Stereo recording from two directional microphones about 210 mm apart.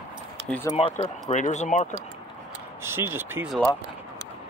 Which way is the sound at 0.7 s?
30° left (ahead or behind).